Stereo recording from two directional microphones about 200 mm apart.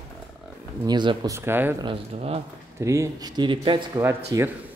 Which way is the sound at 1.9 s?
30° right (ahead or behind).